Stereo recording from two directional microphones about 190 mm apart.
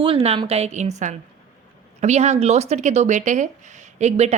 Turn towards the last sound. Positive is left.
turn(degrees=-35)  # may be behind; listen again after turning